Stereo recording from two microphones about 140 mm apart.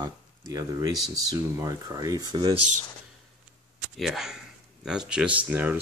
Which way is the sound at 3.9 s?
Centre (ahead or behind).